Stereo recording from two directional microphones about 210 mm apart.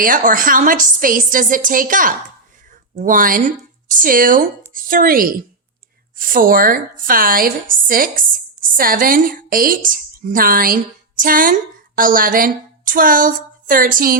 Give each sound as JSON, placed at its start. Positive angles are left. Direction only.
{"t": 0.0, "sound": "a woman's voice", "side_deg": -40}